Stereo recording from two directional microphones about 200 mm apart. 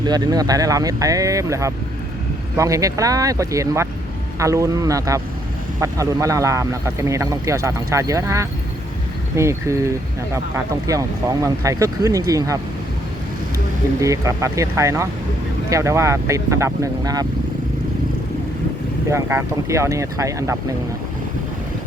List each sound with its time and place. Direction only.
0.0 s speech: 20° right (ahead or behind)
14.0 s speech: 15° right (ahead or behind)
19.0 s speech: 15° right (ahead or behind)